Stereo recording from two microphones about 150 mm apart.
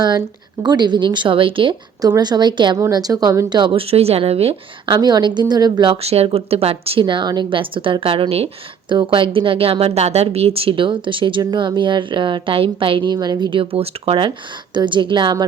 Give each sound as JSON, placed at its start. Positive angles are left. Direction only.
{"t": 0.6, "sound": "a woman's voice", "side_deg": -30}
{"t": 4.9, "sound": "a woman's voice", "side_deg": -30}